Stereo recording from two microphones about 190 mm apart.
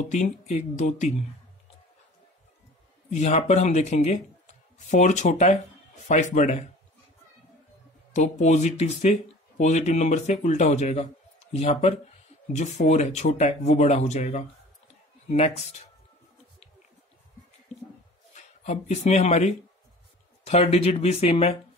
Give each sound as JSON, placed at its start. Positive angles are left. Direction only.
{"t": 0.0, "sound": "speech", "side_deg": 40}
{"t": 3.1, "sound": "speech", "side_deg": 35}
{"t": 8.1, "sound": "speech", "side_deg": 40}
{"t": 18.3, "sound": "speech", "side_deg": 35}